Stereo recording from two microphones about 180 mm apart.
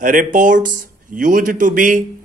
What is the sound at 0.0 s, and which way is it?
A man's voice, 50° right (ahead or behind).